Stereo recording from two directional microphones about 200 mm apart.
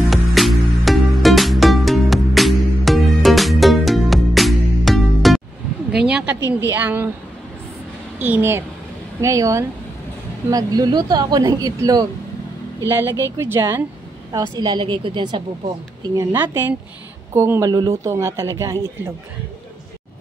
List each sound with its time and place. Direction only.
0.1 s music: centre (ahead or behind)
5.9 s a sound: 5° right (ahead or behind)
6.7 s speech: 10° right (ahead or behind)
8.2 s speech: 10° right (ahead or behind)